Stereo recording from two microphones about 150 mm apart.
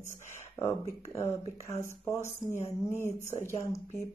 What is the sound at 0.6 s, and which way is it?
Speech, 20° left (ahead or behind).